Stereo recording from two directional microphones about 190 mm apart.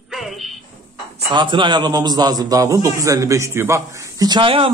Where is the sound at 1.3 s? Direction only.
25° right (ahead or behind).